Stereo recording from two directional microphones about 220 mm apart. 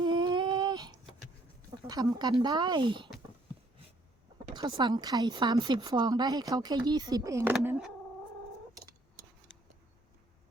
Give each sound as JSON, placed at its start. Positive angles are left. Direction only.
{"t": 0.0, "sound": "humming", "side_deg": -20}
{"t": 1.9, "sound": "speech", "side_deg": -15}
{"t": 4.5, "sound": "a woman's voice", "side_deg": -20}